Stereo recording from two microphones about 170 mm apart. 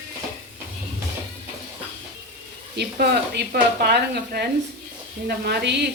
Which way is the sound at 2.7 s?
75° right (ahead or behind).